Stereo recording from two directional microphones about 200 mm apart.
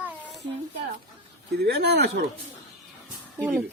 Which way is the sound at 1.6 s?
55° right (ahead or behind).